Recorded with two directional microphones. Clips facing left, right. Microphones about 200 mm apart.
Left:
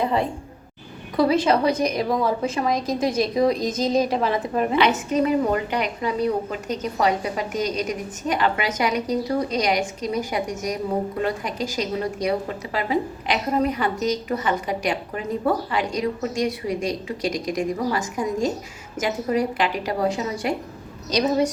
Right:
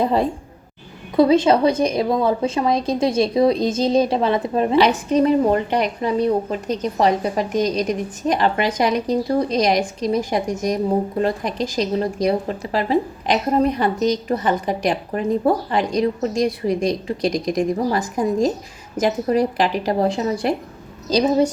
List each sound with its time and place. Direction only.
1.1 s a woman's voice: 25° right (ahead or behind)